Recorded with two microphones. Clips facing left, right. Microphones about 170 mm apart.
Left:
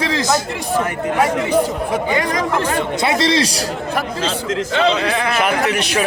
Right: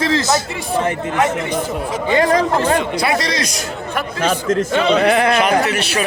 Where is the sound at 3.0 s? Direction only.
25° left (ahead or behind).